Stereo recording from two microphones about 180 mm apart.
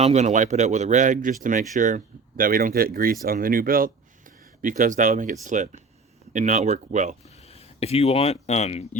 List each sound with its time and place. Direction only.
0.0 s speech: 40° right (ahead or behind)
7.4 s speech: 35° left (ahead or behind)